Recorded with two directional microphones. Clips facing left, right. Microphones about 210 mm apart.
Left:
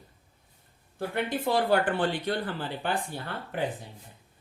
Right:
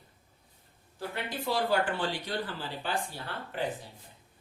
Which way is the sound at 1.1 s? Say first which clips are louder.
Left 5 dB; 55° left (ahead or behind).